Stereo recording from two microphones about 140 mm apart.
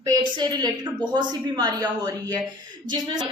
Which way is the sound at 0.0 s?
30° right (ahead or behind).